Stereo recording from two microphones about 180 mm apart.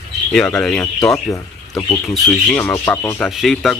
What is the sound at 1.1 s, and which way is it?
Speech, 15° left (ahead or behind).